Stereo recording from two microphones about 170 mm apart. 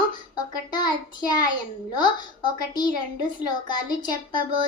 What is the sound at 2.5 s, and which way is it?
Child singing, 25° left (ahead or behind).